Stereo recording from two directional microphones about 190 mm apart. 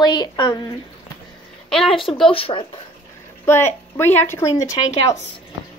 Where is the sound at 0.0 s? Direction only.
20° left (ahead or behind).